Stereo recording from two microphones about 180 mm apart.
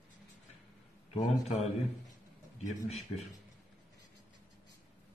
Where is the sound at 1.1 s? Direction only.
35° left (ahead or behind).